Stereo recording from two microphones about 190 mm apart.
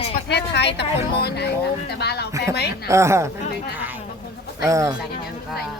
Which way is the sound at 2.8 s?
15° right (ahead or behind).